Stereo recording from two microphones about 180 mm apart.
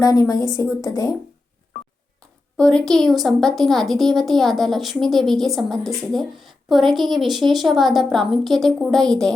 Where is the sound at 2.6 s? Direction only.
5° left (ahead or behind).